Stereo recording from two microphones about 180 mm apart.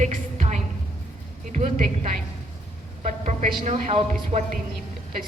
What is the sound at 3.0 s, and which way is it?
Speech, 40° right (ahead or behind).